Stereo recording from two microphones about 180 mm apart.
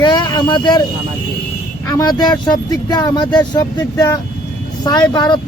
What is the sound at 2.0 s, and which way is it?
Speech, 25° left (ahead or behind).